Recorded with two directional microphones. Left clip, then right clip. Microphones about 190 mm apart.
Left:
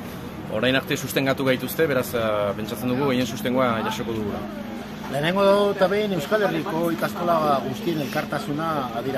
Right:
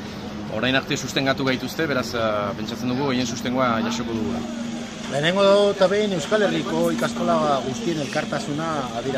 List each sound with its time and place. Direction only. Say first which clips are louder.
0.6 s speech: even; 20° left (ahead or behind)
5.2 s speech: right 2 dB; 10° right (ahead or behind)